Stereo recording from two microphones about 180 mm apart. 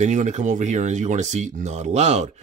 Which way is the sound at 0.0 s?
40° right (ahead or behind).